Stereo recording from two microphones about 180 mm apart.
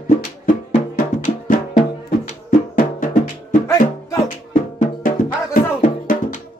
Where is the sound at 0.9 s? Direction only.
50° left (ahead or behind).